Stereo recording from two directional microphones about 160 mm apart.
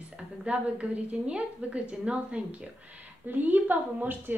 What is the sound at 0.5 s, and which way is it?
A woman's voice, 10° right (ahead or behind).